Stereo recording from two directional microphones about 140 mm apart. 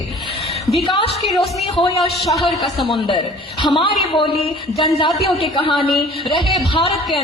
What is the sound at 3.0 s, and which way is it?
Speech, 35° left (ahead or behind).